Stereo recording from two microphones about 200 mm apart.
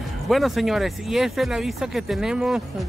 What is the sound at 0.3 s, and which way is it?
Speech, centre (ahead or behind).